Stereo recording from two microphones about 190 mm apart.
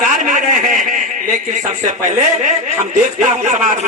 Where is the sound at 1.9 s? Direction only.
40° right (ahead or behind).